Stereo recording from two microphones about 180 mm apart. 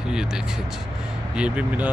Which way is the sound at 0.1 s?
5° right (ahead or behind).